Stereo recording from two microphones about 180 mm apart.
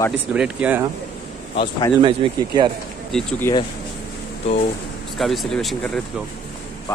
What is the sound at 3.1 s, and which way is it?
Speech, 5° left (ahead or behind).